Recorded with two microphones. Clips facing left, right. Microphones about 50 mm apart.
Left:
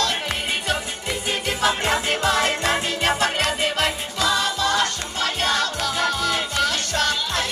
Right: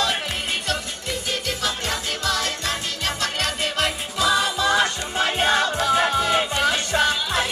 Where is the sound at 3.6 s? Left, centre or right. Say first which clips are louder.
Left 2 dB; centre.